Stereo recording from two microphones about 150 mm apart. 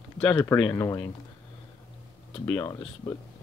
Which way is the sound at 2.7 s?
25° left (ahead or behind).